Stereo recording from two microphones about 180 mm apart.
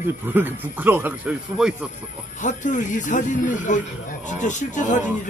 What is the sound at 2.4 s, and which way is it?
Speech, 45° left (ahead or behind).